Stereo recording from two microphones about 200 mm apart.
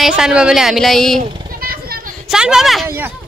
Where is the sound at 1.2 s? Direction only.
50° right (ahead or behind).